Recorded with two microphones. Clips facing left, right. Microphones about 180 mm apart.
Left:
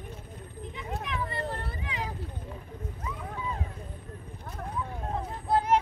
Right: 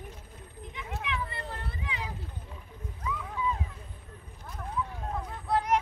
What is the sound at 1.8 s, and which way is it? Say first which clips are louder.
Vehicle: left 2 dB; 40° left (ahead or behind).